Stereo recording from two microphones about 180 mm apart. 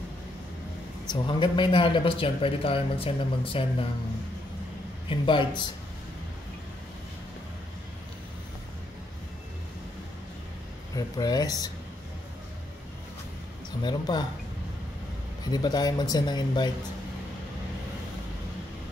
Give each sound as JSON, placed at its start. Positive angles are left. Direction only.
{"t": 1.1, "sound": "a man's voice", "side_deg": 25}
{"t": 5.2, "sound": "a man's voice", "side_deg": 25}
{"t": 11.0, "sound": "a man's voice", "side_deg": 20}
{"t": 13.8, "sound": "a man's voice", "side_deg": 25}
{"t": 15.5, "sound": "a man's voice", "side_deg": 25}